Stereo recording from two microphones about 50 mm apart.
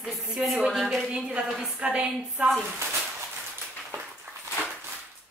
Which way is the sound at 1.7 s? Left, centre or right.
Right.